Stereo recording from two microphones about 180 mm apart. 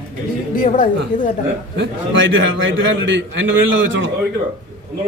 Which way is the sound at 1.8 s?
90° right.